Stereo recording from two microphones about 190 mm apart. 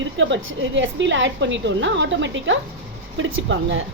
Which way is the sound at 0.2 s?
75° right (ahead or behind).